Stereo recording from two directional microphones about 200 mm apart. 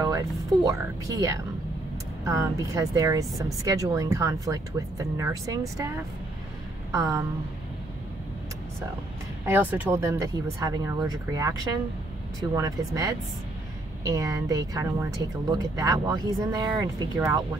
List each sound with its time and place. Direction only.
0.0 s speech: 20° right (ahead or behind)
6.9 s speech: 15° right (ahead or behind)
9.5 s speech: 10° right (ahead or behind)